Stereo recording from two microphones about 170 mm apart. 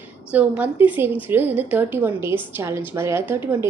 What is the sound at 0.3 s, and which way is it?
A woman's voice, 10° right (ahead or behind).